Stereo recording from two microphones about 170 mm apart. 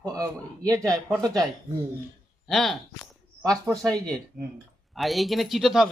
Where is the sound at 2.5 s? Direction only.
Centre (ahead or behind).